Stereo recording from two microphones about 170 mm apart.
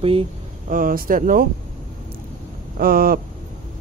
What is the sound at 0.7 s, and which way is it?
Speech, 55° right (ahead or behind).